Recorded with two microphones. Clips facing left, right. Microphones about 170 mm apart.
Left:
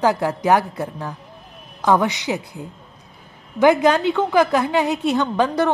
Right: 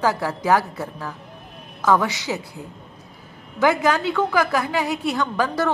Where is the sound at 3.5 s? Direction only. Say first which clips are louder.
Left 4 dB; 20° left (ahead or behind).